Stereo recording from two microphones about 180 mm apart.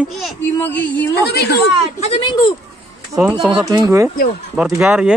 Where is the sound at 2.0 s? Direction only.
30° left (ahead or behind).